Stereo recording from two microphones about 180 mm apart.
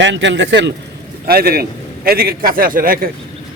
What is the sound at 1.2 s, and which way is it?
A man's voice, 55° right (ahead or behind).